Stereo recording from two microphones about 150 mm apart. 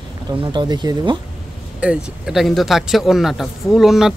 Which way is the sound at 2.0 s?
Centre (ahead or behind).